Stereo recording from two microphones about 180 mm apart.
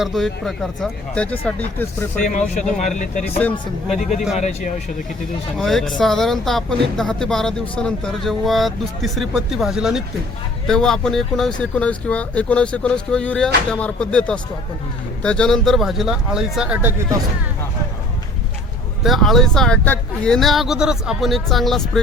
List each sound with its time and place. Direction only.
0.0 s speech: centre (ahead or behind)
2.2 s speech: 45° left (ahead or behind)
5.5 s speech: centre (ahead or behind)
19.0 s speech: centre (ahead or behind)